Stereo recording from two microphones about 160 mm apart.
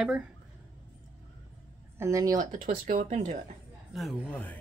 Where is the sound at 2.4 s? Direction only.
55° right (ahead or behind).